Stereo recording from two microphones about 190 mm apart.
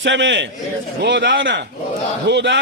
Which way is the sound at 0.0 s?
75° right (ahead or behind).